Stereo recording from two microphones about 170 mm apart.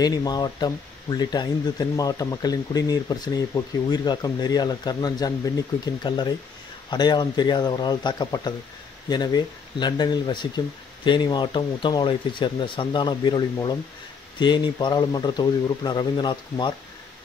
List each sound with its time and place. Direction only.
0.0 s speech: 25° left (ahead or behind)